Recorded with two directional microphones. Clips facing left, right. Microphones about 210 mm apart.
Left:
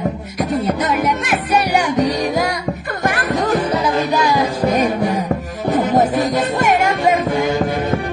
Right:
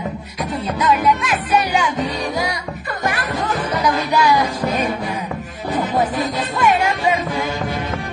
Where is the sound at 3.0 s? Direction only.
45° left (ahead or behind).